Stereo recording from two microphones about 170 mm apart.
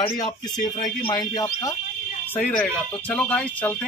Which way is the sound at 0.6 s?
50° left (ahead or behind).